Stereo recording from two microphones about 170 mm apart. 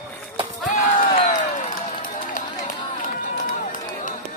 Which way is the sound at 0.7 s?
55° left (ahead or behind).